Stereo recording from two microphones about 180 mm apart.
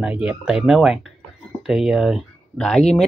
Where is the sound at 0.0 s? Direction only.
5° right (ahead or behind).